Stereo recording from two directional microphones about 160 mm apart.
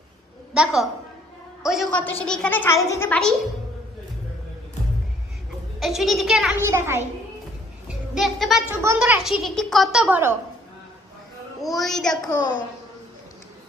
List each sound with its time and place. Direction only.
0.6 s a woman's voice: centre (ahead or behind); by 3.2 s 15° left (ahead or behind)
5.8 s a woman's voice: centre (ahead or behind)
6.6 s a woman's voice: 15° right (ahead or behind)
7.9 s a child's voice: 5° right (ahead or behind)
9.4 s a woman's voice: centre (ahead or behind)
11.6 s a woman's voice: centre (ahead or behind)